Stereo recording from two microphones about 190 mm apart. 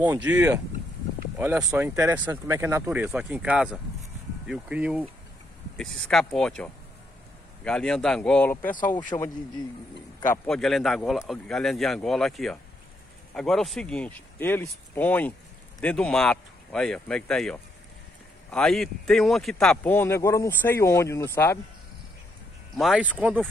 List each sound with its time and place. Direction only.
0.0 s speech: 10° right (ahead or behind); by 8.5 s 5° left (ahead or behind)
9.1 s speech: 20° left (ahead or behind)
10.4 s speech: centre (ahead or behind)
22.8 s speech: 5° right (ahead or behind)